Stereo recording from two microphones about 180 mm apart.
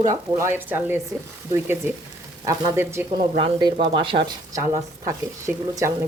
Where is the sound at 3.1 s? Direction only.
25° right (ahead or behind).